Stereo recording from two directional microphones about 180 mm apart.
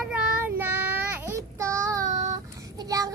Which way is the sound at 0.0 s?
5° right (ahead or behind).